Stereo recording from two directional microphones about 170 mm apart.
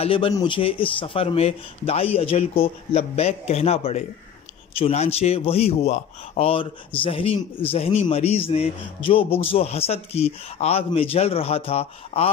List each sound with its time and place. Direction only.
0.0 s a man's voice: 30° left (ahead or behind)